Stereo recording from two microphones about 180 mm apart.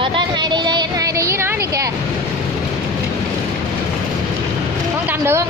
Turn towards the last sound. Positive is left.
turn(degrees=-15)  # may be behind; listen again after turning